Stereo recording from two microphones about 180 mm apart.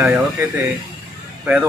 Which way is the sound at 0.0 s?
Centre (ahead or behind).